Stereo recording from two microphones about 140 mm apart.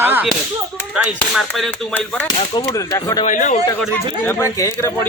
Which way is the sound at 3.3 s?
65° left (ahead or behind).